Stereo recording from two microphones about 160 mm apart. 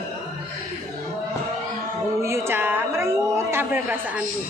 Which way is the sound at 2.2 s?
15° right (ahead or behind).